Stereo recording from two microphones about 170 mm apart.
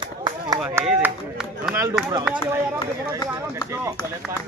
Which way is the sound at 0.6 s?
10° right (ahead or behind).